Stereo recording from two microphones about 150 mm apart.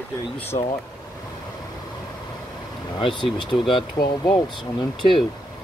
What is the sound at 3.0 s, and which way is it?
Speech, 30° left (ahead or behind).